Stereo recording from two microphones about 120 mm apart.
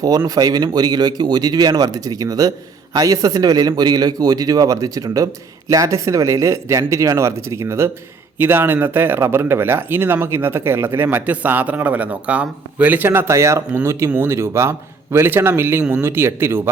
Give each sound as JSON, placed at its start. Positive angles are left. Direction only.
{"t": 0.3, "sound": "a man's voice", "side_deg": -30}